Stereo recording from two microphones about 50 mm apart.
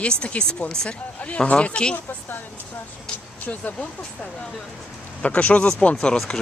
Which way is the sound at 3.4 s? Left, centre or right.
Left.